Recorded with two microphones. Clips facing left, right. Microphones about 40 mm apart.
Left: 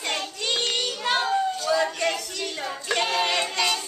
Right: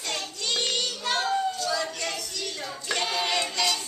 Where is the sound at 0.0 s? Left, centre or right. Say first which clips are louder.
Left 4 dB; left.